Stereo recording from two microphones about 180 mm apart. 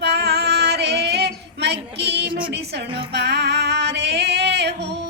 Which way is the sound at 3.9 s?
70° right (ahead or behind).